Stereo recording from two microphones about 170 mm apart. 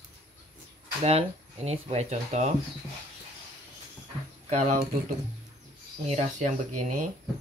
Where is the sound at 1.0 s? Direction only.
35° right (ahead or behind).